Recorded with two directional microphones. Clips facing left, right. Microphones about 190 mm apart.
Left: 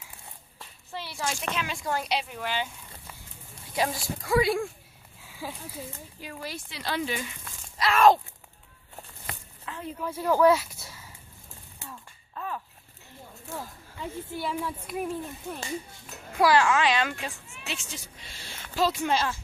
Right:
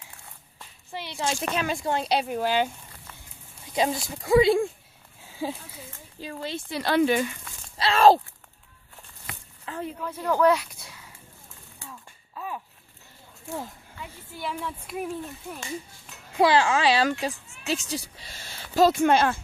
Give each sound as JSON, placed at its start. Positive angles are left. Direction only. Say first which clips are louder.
{"t": 0.9, "sound": "speech", "louder": "right 4 dB", "side_deg": -20}
{"t": 1.5, "sound": "speech", "louder": "right 6 dB", "side_deg": -45}
{"t": 1.8, "sound": "speech", "louder": "right 4 dB", "side_deg": -25}
{"t": 2.1, "sound": "speech", "louder": "right 7 dB", "side_deg": -45}
{"t": 3.7, "sound": "speech", "louder": "right 3 dB", "side_deg": -20}
{"t": 5.2, "sound": "a sound", "louder": "right 7 dB", "side_deg": -25}
{"t": 6.1, "sound": "speech", "louder": "right 6 dB", "side_deg": -25}
{"t": 6.7, "sound": "speech", "louder": "right 10 dB", "side_deg": -55}
{"t": 7.8, "sound": "speech", "louder": "right 2 dB", "side_deg": -30}
{"t": 9.7, "sound": "a sound", "louder": "right 5 dB", "side_deg": -30}
{"t": 10.0, "sound": "speech", "louder": "left 1 dB", "side_deg": 10}
{"t": 11.9, "sound": "a sound", "louder": "even", "side_deg": -5}
{"t": 14.4, "sound": "speech", "louder": "right 1 dB", "side_deg": 0}
{"t": 16.4, "sound": "a woman's voice", "louder": "right 1 dB", "side_deg": -25}